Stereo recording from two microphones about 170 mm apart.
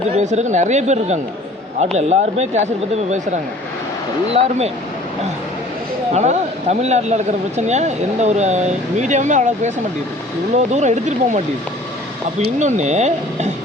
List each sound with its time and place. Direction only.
0.2 s speech: 45° right (ahead or behind)
4.3 s speech: 40° right (ahead or behind)
6.1 s speech: 40° right (ahead or behind)
12.5 s speech: 45° right (ahead or behind)